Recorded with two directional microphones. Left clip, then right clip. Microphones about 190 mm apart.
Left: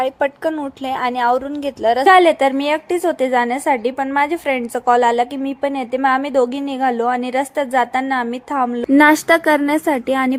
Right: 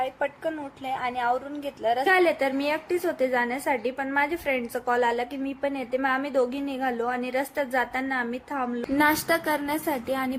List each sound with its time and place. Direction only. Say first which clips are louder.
0.0 s a woman's voice: left 10 dB; 45° left (ahead or behind)